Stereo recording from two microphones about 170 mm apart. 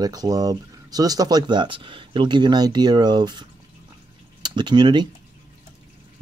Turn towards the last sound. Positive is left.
turn(degrees=-25)  # may be behind; listen again after turning